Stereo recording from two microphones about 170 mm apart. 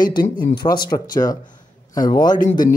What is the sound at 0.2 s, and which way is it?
Speech, 55° left (ahead or behind).